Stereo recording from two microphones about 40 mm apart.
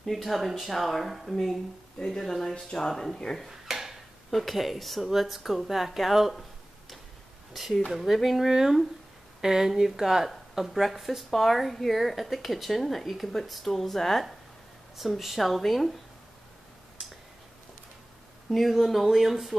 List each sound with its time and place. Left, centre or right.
0.0 s a woman's voice: centre
2.5 s speech: centre
2.9 s a woman's voice: centre
3.3 s a sound: centre
4.3 s a woman's voice: centre
7.5 s a woman's voice: centre
18.5 s a woman's voice: centre